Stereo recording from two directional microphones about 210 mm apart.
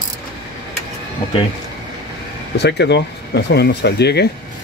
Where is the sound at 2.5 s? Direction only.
55° left (ahead or behind).